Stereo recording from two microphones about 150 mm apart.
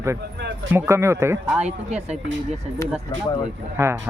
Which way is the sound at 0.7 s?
15° right (ahead or behind).